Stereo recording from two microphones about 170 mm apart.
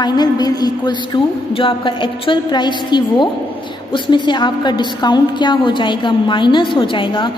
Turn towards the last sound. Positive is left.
turn(degrees=30)  # may be behind; listen again after turning